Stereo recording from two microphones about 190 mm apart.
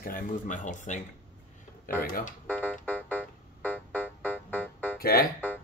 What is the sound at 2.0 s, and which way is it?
Speech, 45° left (ahead or behind).